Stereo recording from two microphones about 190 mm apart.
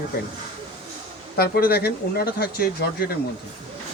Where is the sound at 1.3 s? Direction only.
55° left (ahead or behind).